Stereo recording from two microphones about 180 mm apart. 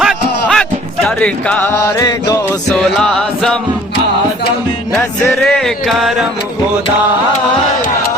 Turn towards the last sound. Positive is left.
turn(degrees=0)  # may be behind; listen again after turning